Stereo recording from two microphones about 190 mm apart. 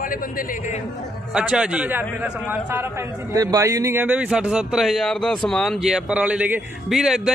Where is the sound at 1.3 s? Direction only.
5° right (ahead or behind).